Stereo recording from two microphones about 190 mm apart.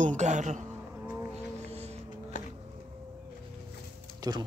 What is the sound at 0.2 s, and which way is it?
Speech, 40° right (ahead or behind).